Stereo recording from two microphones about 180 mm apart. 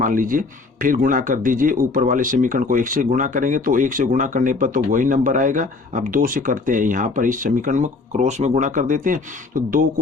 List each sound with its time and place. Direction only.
0.0 s speech: 50° right (ahead or behind)